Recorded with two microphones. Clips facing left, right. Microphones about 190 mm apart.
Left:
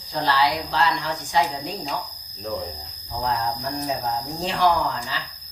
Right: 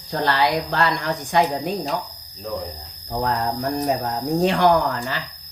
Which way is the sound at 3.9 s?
60° right (ahead or behind).